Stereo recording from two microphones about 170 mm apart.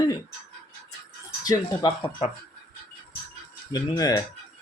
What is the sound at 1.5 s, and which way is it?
Speech, 25° left (ahead or behind).